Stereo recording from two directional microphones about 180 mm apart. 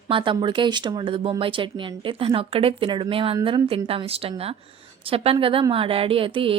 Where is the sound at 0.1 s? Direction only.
30° right (ahead or behind).